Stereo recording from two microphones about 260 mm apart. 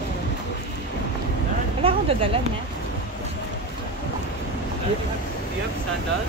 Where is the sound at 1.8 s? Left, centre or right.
Right.